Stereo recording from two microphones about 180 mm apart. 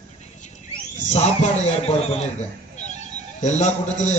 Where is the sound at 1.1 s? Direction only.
35° left (ahead or behind).